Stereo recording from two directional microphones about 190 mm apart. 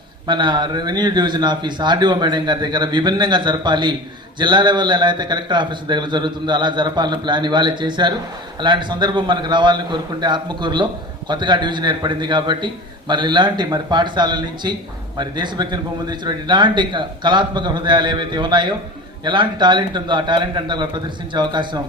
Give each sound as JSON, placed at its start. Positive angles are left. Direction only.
{"t": 0.3, "sound": "a man's voice", "side_deg": -25}